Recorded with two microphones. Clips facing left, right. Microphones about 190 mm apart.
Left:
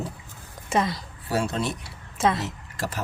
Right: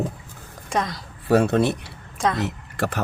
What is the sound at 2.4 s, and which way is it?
Speech, 60° right (ahead or behind).